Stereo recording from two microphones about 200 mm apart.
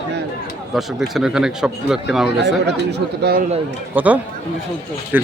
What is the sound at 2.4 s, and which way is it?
Speech, 55° right (ahead or behind).